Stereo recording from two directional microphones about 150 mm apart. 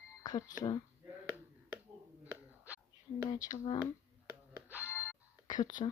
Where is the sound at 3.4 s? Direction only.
25° left (ahead or behind).